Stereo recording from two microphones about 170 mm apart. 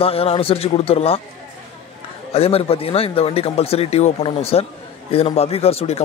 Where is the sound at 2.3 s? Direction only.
35° left (ahead or behind).